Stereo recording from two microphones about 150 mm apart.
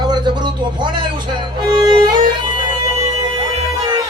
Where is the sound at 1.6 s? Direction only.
30° right (ahead or behind).